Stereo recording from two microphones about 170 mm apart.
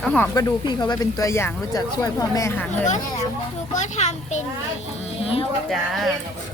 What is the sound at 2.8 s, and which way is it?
A child's voice, 45° left (ahead or behind).